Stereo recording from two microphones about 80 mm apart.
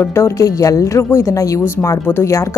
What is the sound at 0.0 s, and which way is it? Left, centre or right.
A woman's voice, left.